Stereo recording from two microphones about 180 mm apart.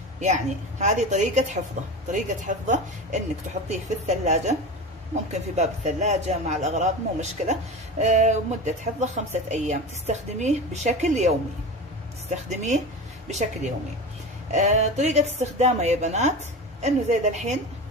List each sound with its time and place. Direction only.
0.2 s speech: 40° right (ahead or behind)
14.5 s speech: 40° right (ahead or behind)